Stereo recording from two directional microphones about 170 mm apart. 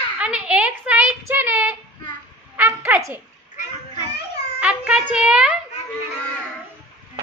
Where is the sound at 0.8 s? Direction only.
10° right (ahead or behind).